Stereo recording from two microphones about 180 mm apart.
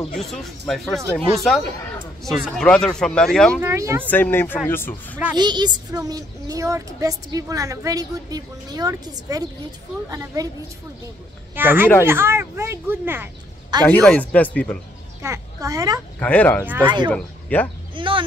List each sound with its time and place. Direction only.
0.0 s speech: centre (ahead or behind)
2.2 s speech: 5° left (ahead or behind)
3.6 s speech: 15° right (ahead or behind)
4.1 s speech: 10° left (ahead or behind)
5.3 s speech: 25° right (ahead or behind)
11.5 s speech: 10° right (ahead or behind)
13.7 s speech: 25° right (ahead or behind)
14.0 s speech: 5° left (ahead or behind)
15.2 s a child's voice: 15° right (ahead or behind)
16.2 s speech: 10° left (ahead or behind)
16.8 s speech: 25° right (ahead or behind)
17.1 s speech: 10° left (ahead or behind)
17.9 s a sound: 30° right (ahead or behind)